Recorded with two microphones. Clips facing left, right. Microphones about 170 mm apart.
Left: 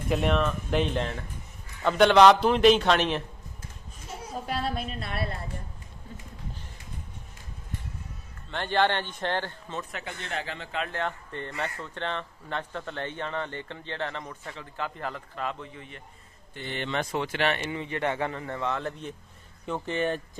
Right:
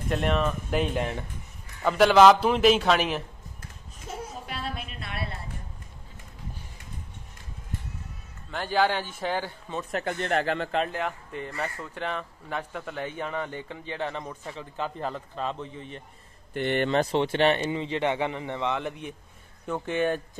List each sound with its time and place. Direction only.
0.1 s a man's voice: centre (ahead or behind)
4.5 s a woman's voice: 40° left (ahead or behind)
8.5 s speech: 5° right (ahead or behind)
9.8 s speech: 45° right (ahead or behind)
10.9 s speech: 5° right (ahead or behind)
16.5 s speech: 60° right (ahead or behind)
16.9 s a man's voice: 30° right (ahead or behind); by 20.2 s 10° right (ahead or behind)